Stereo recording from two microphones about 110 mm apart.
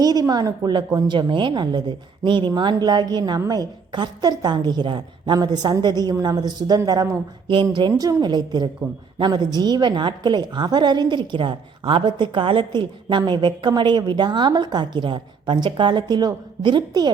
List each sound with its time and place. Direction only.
0.0 s a woman's voice: 35° right (ahead or behind)
7.4 s a woman's voice: 50° right (ahead or behind)